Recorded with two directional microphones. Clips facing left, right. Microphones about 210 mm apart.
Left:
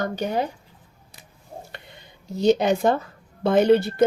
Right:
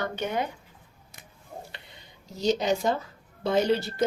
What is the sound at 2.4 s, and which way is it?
Speech, 60° left (ahead or behind).